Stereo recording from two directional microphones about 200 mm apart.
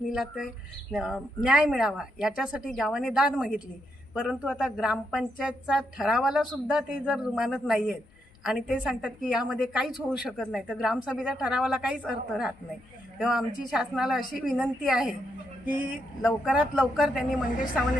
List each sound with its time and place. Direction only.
0.1 s a woman's voice: centre (ahead or behind)